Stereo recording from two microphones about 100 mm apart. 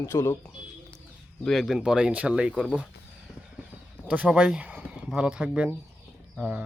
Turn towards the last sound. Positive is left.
turn(degrees=-10)  # may be behind; listen again after turning